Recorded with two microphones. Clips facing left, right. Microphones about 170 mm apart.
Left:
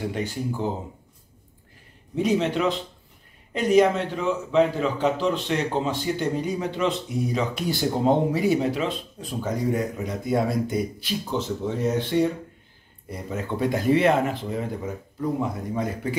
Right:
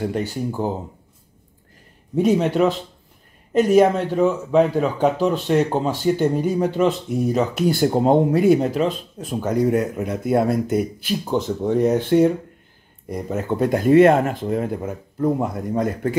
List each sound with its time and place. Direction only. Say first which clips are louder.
2.1 s speech: right 5 dB; 50° right (ahead or behind)
3.5 s speech: right 4 dB; 45° right (ahead or behind)
8.6 s speech: right 4 dB; 45° right (ahead or behind)
9.2 s speech: right 7 dB; 65° right (ahead or behind)